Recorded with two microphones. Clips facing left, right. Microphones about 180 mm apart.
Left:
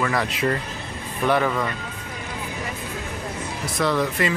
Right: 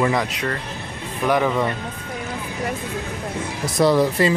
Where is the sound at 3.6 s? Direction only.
35° right (ahead or behind).